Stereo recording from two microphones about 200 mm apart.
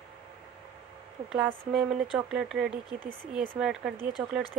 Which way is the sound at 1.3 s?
5° right (ahead or behind).